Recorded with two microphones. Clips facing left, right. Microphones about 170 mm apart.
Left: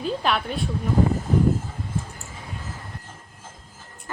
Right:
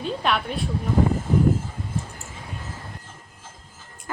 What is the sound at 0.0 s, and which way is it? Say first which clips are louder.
Speech: even; centre (ahead or behind).